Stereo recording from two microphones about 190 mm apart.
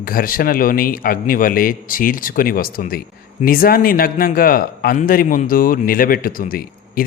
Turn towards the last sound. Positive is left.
turn(degrees=50)  # may be behind; listen again after turning